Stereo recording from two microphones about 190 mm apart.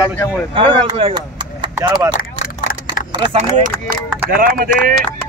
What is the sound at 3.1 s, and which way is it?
Speech, 25° right (ahead or behind).